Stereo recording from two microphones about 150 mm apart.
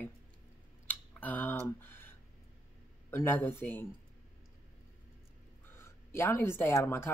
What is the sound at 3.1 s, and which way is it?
Speech, 15° left (ahead or behind).